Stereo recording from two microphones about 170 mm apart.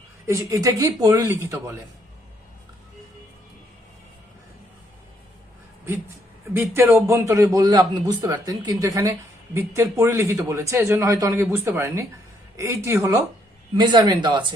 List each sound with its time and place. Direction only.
0.3 s a man's voice: 20° right (ahead or behind)
6.5 s a man's voice: 15° right (ahead or behind)